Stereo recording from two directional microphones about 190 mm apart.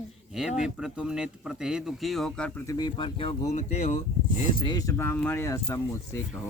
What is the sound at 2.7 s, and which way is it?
Speech, 20° left (ahead or behind).